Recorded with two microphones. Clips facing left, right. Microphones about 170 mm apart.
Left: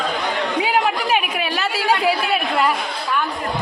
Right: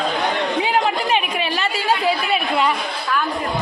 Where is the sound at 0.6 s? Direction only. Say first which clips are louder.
Left 2 dB; 5° left (ahead or behind).